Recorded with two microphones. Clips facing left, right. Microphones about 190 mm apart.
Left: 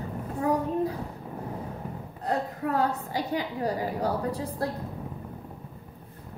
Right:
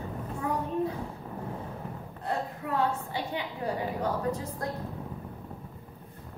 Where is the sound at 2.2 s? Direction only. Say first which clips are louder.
Left 4 dB; 40° left (ahead or behind).